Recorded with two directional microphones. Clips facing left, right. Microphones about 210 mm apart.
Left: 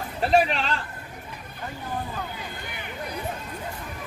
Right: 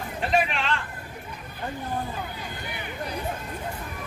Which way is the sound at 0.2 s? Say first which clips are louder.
Left 4 dB; 35° left (ahead or behind).